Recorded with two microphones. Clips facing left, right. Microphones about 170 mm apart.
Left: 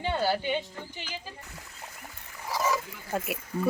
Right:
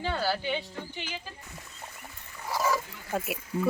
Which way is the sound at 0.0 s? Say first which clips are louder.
Left 2 dB; 20° left (ahead or behind).